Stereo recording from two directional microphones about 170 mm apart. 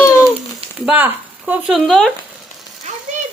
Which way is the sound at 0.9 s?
10° right (ahead or behind).